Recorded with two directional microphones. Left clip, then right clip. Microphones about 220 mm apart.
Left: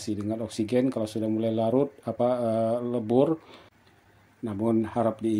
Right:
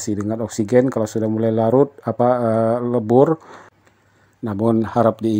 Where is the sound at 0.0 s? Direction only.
35° right (ahead or behind).